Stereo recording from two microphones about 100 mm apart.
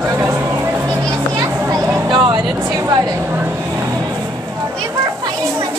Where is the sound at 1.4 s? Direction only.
40° right (ahead or behind).